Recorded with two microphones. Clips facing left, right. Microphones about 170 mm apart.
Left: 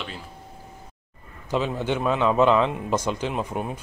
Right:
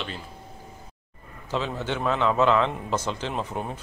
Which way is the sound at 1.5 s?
15° left (ahead or behind).